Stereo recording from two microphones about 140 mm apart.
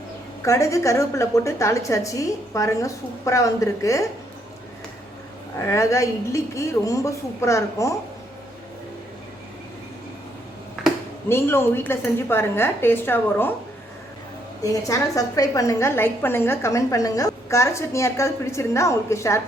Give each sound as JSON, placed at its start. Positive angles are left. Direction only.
{"t": 0.4, "sound": "a woman's voice", "side_deg": 20}
{"t": 5.5, "sound": "a woman's voice", "side_deg": 20}
{"t": 10.8, "sound": "finger snapping", "side_deg": 0}
{"t": 11.3, "sound": "a woman's voice", "side_deg": 15}
{"t": 14.6, "sound": "a woman's voice", "side_deg": 25}